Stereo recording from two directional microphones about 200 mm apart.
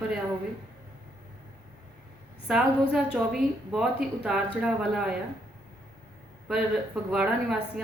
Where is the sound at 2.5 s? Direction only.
5° right (ahead or behind).